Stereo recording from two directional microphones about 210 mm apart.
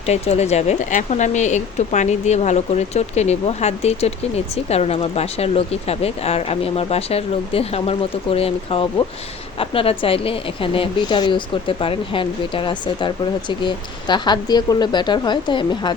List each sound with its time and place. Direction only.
0.0 s speech: 30° left (ahead or behind)